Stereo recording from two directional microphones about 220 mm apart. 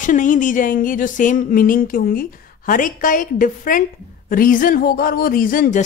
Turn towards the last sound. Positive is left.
turn(degrees=35)  # may be behind; listen again after turning